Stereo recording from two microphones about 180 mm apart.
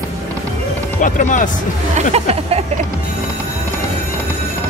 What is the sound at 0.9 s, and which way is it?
Speech, 45° left (ahead or behind).